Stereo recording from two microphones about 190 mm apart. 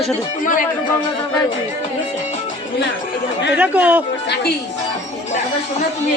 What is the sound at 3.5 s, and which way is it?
Speech, 5° right (ahead or behind).